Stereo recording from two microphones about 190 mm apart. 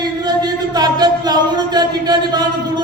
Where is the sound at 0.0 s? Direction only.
20° right (ahead or behind).